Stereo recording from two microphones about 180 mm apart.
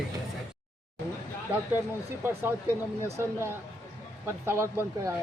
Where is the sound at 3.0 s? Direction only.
15° right (ahead or behind).